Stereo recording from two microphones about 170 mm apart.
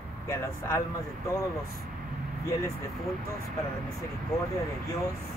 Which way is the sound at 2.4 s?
20° left (ahead or behind).